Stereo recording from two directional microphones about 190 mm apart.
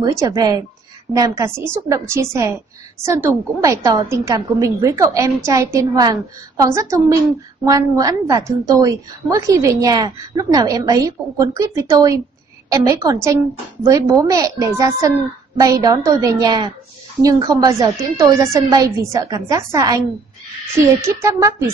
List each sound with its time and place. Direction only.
0.0 s a woman's voice: 15° right (ahead or behind)
21.2 s a woman's voice: 15° right (ahead or behind)